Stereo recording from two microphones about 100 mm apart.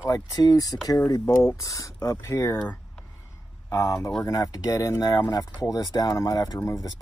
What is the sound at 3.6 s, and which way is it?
Speech, 35° left (ahead or behind).